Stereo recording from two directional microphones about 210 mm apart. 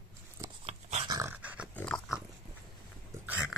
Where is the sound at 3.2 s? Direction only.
5° right (ahead or behind).